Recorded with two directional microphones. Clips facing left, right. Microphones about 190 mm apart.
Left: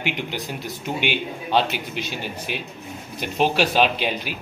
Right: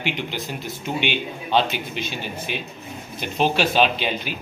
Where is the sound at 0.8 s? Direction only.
10° left (ahead or behind).